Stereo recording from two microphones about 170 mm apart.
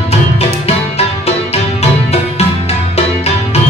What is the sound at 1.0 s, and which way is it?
Music, 40° left (ahead or behind).